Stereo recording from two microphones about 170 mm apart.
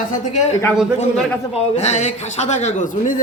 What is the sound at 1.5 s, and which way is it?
Speech, 40° left (ahead or behind).